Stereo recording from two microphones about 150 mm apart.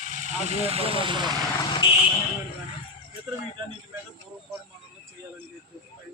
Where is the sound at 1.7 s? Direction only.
35° left (ahead or behind).